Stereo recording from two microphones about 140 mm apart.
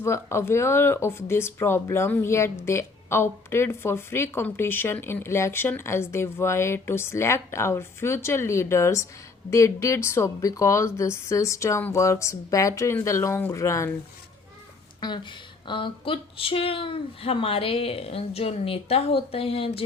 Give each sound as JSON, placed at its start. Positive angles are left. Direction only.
{"t": 0.0, "sound": "speech", "side_deg": 20}
{"t": 15.0, "sound": "speech", "side_deg": 35}